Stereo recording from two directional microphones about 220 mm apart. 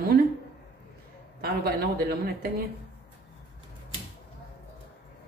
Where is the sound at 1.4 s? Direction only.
45° right (ahead or behind).